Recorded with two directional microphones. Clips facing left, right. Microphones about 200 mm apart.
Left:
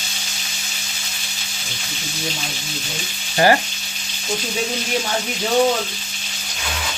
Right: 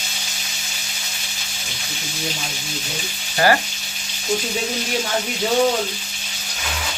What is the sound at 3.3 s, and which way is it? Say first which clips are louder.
Frying: left 2 dB; 25° left (ahead or behind).